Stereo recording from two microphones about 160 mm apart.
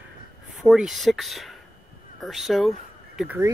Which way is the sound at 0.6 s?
5° right (ahead or behind).